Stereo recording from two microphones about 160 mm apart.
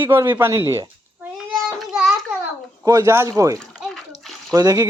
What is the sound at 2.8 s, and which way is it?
Speech, 20° right (ahead or behind).